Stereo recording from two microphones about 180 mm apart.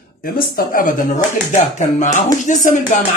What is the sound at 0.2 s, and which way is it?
A woman's voice, 50° left (ahead or behind).